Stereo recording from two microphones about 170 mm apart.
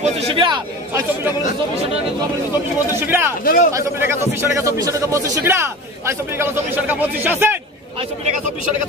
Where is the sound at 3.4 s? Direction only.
60° left (ahead or behind).